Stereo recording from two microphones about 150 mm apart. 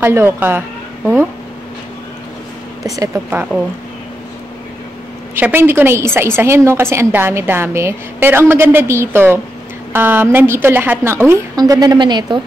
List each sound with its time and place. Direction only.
0.0 s a woman's voice: 15° right (ahead or behind)
3.3 s a woman's voice: 10° right (ahead or behind)
5.3 s a woman's voice: 15° right (ahead or behind); by 12.4 s 30° right (ahead or behind)